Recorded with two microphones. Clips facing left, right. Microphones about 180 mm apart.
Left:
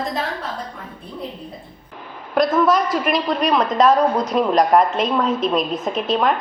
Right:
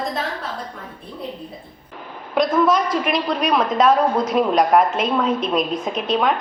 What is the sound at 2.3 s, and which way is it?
A woman's voice, centre (ahead or behind).